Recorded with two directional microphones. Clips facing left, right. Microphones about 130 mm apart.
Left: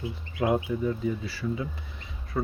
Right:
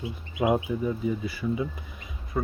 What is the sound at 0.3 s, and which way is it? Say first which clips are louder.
Speech: right 1 dB; 15° right (ahead or behind).